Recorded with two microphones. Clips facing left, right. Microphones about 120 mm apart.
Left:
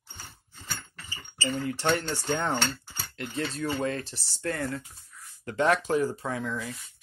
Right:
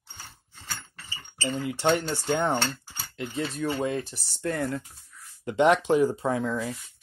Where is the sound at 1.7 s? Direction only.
15° right (ahead or behind).